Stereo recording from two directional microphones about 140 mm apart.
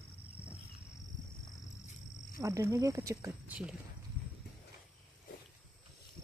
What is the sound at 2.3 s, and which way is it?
Speech, 20° right (ahead or behind).